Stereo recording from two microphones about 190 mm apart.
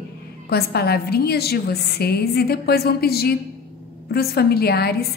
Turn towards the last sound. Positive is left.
turn(degrees=55)  # may be behind; listen again after turning